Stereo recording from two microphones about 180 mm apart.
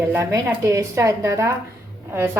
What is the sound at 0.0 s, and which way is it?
A woman's voice, 15° right (ahead or behind).